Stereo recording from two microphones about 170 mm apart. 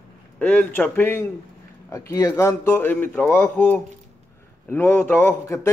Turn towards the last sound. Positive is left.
turn(degrees=15)  # may be behind; listen again after turning